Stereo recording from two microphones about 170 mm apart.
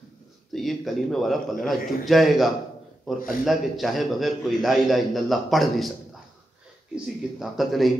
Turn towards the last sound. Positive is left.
turn(degrees=0)  # may be behind; listen again after turning